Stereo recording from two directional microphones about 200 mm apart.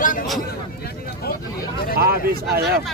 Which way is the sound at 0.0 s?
40° left (ahead or behind).